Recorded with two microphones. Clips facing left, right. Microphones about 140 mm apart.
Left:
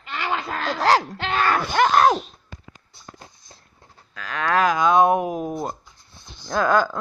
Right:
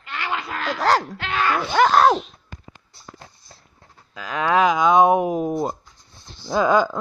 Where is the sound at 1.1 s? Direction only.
30° left (ahead or behind).